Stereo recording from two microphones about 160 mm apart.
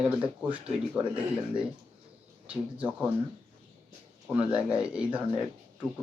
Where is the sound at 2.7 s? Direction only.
10° right (ahead or behind).